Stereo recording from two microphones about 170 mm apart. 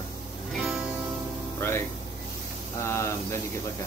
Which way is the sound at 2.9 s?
15° left (ahead or behind).